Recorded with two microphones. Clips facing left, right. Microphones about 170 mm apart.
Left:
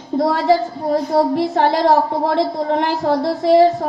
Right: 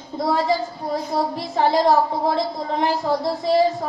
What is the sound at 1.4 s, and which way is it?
A woman's voice, 65° left (ahead or behind).